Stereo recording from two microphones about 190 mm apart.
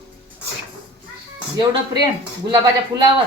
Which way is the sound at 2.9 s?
20° right (ahead or behind).